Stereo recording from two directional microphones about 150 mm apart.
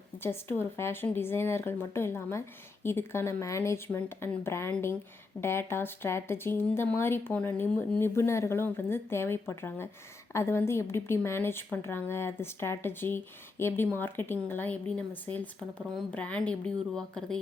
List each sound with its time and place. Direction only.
0.2 s speech: 15° left (ahead or behind)